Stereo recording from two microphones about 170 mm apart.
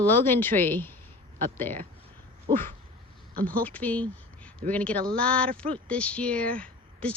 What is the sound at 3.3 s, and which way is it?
Speech, 60° right (ahead or behind).